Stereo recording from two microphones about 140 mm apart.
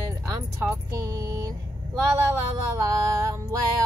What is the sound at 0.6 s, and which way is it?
Music, 20° right (ahead or behind).